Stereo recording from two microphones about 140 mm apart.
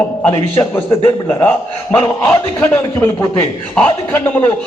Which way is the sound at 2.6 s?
20° left (ahead or behind).